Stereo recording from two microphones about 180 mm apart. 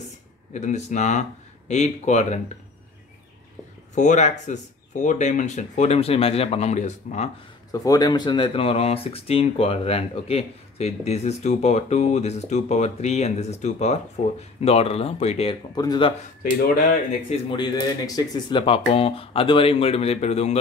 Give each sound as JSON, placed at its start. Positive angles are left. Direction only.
{"t": 0.5, "sound": "speech", "side_deg": 40}
{"t": 3.9, "sound": "speech", "side_deg": 40}
{"t": 7.7, "sound": "speech", "side_deg": 20}
{"t": 15.7, "sound": "speech", "side_deg": 20}
{"t": 16.4, "sound": "speech", "side_deg": 55}
{"t": 17.3, "sound": "speech", "side_deg": 25}